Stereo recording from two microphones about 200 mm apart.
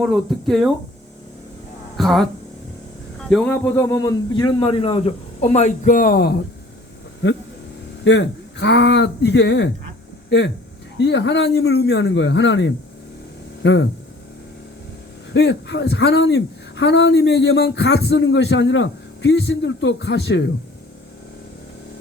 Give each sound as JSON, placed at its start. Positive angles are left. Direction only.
{"t": 0.0, "sound": "speech", "side_deg": 0}
{"t": 2.0, "sound": "speech", "side_deg": 0}
{"t": 3.2, "sound": "a man's voice", "side_deg": 5}
{"t": 8.0, "sound": "a man's voice", "side_deg": 60}
{"t": 15.3, "sound": "a man's voice", "side_deg": 60}